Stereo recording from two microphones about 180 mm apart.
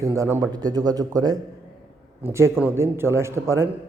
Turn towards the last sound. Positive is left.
turn(degrees=-15)  # may be behind; listen again after turning